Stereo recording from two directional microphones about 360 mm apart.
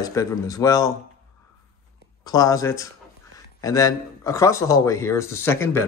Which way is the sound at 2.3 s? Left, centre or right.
Centre.